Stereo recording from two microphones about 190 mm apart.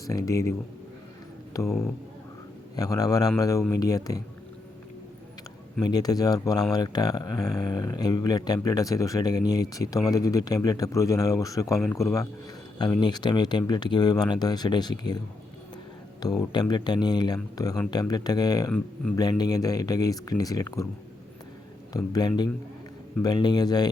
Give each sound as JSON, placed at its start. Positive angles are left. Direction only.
{"t": 0.0, "sound": "speech", "side_deg": 20}
{"t": 1.6, "sound": "speech", "side_deg": 0}
{"t": 2.7, "sound": "speech", "side_deg": 20}
{"t": 5.8, "sound": "speech", "side_deg": 20}
{"t": 11.9, "sound": "speech", "side_deg": 5}
{"t": 13.0, "sound": "speech", "side_deg": 20}
{"t": 16.4, "sound": "speech", "side_deg": 20}
{"t": 21.9, "sound": "speech", "side_deg": 20}